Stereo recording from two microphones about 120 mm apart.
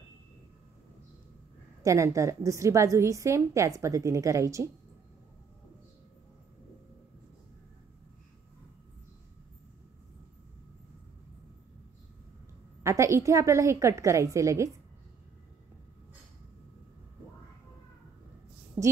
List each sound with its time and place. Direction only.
1.8 s a woman's voice: 25° right (ahead or behind)
12.8 s a woman's voice: 25° right (ahead or behind)
18.8 s a woman's voice: 25° right (ahead or behind)